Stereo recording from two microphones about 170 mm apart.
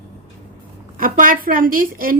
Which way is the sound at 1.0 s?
55° right (ahead or behind).